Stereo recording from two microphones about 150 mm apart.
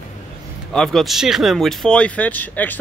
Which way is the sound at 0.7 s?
Centre (ahead or behind).